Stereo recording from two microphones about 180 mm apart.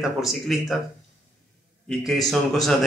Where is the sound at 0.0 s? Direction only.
Centre (ahead or behind).